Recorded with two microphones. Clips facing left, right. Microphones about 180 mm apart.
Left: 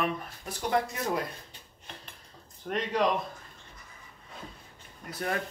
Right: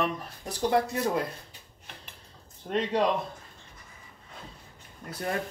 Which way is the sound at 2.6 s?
30° right (ahead or behind).